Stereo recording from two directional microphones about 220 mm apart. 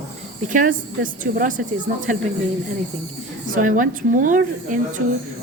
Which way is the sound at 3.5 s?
35° right (ahead or behind).